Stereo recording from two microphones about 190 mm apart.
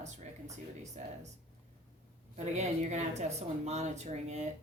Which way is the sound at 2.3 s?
35° right (ahead or behind).